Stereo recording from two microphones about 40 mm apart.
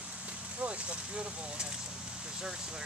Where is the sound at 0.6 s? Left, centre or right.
Right.